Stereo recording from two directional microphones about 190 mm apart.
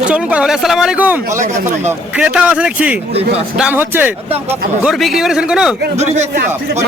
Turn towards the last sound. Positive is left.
turn(degrees=-35)  # may be behind; listen again after turning